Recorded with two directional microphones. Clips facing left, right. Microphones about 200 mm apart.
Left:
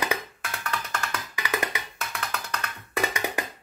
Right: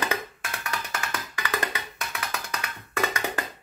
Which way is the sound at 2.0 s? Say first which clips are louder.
Left 1 dB; 5° right (ahead or behind).